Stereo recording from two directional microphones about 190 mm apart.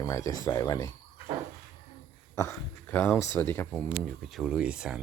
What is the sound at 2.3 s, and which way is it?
Speech, 15° left (ahead or behind).